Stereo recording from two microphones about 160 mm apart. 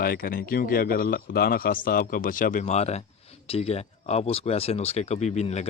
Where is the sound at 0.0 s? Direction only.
65° left (ahead or behind).